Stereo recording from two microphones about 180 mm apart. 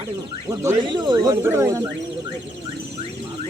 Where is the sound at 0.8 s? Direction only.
25° right (ahead or behind).